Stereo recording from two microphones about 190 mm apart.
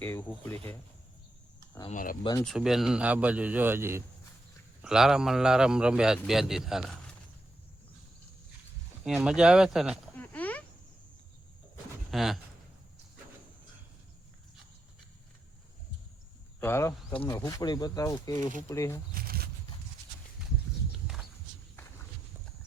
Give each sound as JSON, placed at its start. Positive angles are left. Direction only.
{"t": 0.0, "sound": "speech", "side_deg": 10}
{"t": 1.9, "sound": "speech", "side_deg": 45}
{"t": 2.4, "sound": "a man's voice", "side_deg": 0}
{"t": 9.0, "sound": "a man's voice", "side_deg": -5}
{"t": 10.2, "sound": "a sound", "side_deg": 10}
{"t": 12.1, "sound": "a man's voice", "side_deg": 0}
{"t": 16.6, "sound": "speech", "side_deg": 10}
{"t": 19.1, "sound": "a sound", "side_deg": -50}